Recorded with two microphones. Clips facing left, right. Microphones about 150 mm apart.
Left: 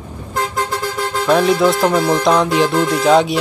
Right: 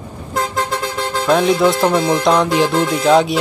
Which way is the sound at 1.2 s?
Centre (ahead or behind).